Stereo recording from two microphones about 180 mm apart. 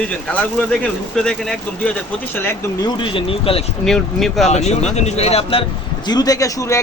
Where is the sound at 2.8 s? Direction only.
30° left (ahead or behind).